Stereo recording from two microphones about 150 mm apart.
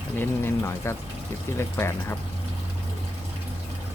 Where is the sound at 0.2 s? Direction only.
15° left (ahead or behind).